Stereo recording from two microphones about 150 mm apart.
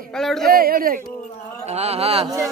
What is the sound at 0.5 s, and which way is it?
Speech, 75° right (ahead or behind).